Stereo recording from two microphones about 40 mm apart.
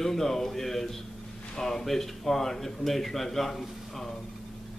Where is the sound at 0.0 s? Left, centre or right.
Centre.